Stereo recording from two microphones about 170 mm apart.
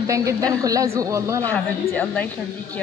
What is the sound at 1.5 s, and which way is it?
Speech, 10° left (ahead or behind).